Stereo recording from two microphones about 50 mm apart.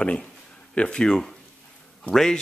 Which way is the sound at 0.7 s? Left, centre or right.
Centre.